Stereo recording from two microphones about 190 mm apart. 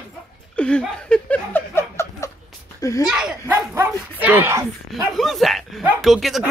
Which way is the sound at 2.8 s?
20° left (ahead or behind).